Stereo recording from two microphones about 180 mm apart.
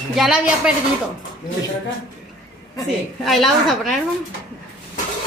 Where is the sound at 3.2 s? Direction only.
Centre (ahead or behind).